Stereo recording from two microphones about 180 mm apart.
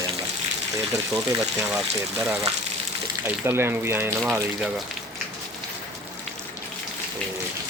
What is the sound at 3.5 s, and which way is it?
Speech, 15° right (ahead or behind).